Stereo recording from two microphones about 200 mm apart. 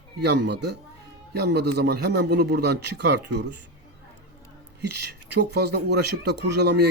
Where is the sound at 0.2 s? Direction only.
55° right (ahead or behind).